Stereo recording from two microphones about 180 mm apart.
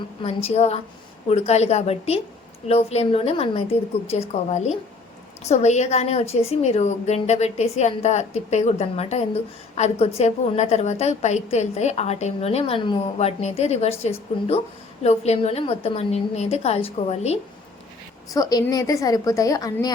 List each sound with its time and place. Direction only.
0.4 s a woman's voice: 35° left (ahead or behind)
18.3 s a woman's voice: 20° left (ahead or behind)